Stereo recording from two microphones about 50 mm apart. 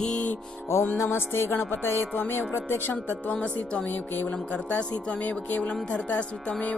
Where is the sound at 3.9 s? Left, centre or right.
Left.